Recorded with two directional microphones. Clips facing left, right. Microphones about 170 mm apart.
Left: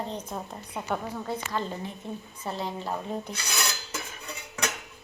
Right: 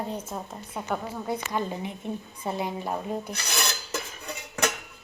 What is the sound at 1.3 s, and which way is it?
A woman's voice, 15° right (ahead or behind).